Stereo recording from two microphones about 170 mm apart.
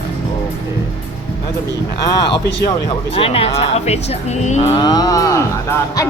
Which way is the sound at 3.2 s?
35° left (ahead or behind).